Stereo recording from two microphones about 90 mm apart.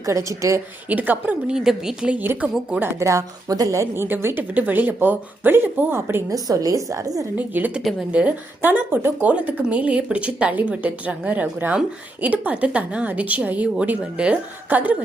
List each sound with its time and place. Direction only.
0.0 s a woman's voice: 35° right (ahead or behind)
0.9 s a woman's voice: 20° right (ahead or behind)
2.2 s a woman's voice: 25° right (ahead or behind)
3.0 s a woman's voice: 35° right (ahead or behind)
6.3 s a woman's voice: 40° right (ahead or behind)
7.3 s a woman's voice: 20° right (ahead or behind)